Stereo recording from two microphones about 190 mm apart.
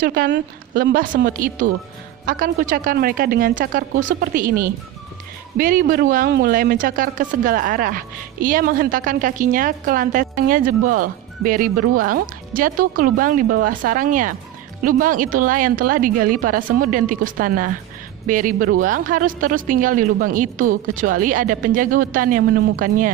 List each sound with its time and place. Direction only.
0.0 s speech: 45° right (ahead or behind)
0.3 s speech: 60° right (ahead or behind)
6.2 s speech: 60° right (ahead or behind); by 23.1 s 45° right (ahead or behind)